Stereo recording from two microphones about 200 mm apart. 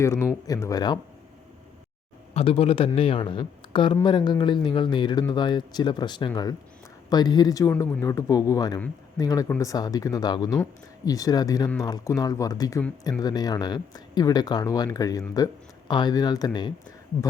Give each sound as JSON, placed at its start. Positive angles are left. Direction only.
{"t": 0.0, "sound": "speech", "side_deg": 15}
{"t": 2.3, "sound": "speech", "side_deg": 30}